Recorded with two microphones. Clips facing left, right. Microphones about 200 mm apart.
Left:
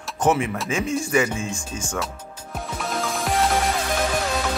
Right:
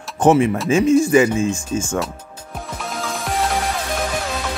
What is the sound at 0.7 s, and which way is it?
Speech, 20° right (ahead or behind).